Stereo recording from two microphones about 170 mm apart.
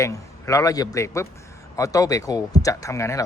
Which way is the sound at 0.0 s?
20° left (ahead or behind).